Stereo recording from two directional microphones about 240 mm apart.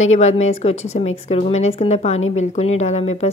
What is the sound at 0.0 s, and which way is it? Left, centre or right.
A woman's voice, left.